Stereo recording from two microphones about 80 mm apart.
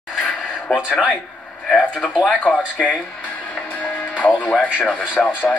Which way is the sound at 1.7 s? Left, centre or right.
Centre.